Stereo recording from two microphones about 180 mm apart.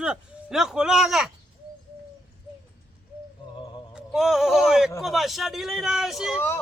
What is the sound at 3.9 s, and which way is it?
Speech, centre (ahead or behind).